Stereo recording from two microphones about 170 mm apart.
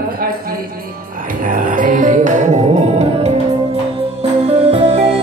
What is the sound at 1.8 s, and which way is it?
Music, 50° right (ahead or behind).